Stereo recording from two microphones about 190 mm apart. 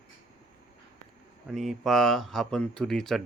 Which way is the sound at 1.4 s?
Centre (ahead or behind).